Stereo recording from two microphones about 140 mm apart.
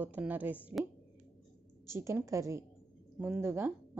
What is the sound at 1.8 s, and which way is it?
A woman's voice, 20° right (ahead or behind).